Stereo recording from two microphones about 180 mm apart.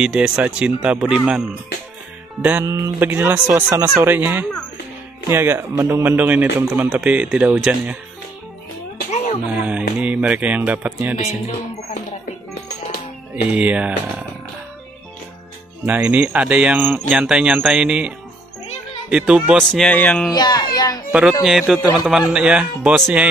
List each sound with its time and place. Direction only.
0.0 s speech: 5° right (ahead or behind)
2.4 s a man's voice: 15° right (ahead or behind)
9.1 s music: 35° left (ahead or behind)
9.6 s a man's voice: 5° right (ahead or behind)
11.2 s speech: 40° left (ahead or behind)
13.5 s a man's voice: 5° right (ahead or behind)
15.8 s a man's voice: 10° right (ahead or behind); by 20.2 s 5° left (ahead or behind)
20.2 s speech: 20° left (ahead or behind)
21.1 s speech: 5° right (ahead or behind)